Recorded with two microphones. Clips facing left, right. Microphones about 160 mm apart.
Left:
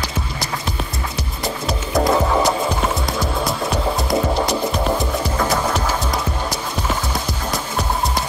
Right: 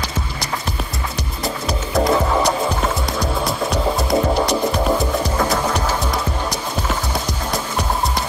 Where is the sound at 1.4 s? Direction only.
Centre (ahead or behind).